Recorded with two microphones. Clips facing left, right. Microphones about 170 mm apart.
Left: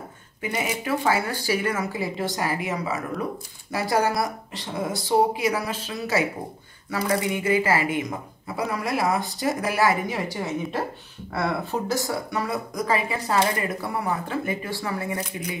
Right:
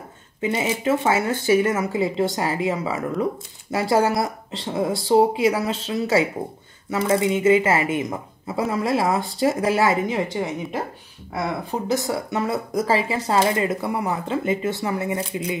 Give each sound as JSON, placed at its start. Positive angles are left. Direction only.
{"t": 0.4, "sound": "speech", "side_deg": -25}